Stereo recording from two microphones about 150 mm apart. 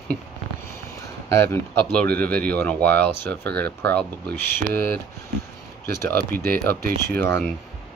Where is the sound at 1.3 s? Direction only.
15° left (ahead or behind).